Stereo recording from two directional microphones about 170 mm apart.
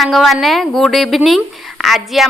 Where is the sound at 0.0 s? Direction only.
Centre (ahead or behind).